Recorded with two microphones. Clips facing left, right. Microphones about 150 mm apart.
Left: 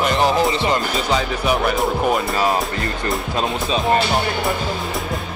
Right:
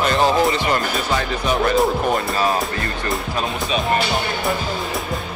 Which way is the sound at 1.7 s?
Centre (ahead or behind).